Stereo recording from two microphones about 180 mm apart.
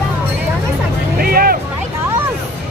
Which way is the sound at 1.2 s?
55° right (ahead or behind).